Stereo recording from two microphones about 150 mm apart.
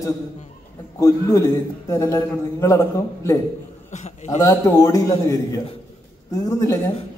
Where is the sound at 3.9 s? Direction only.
50° left (ahead or behind).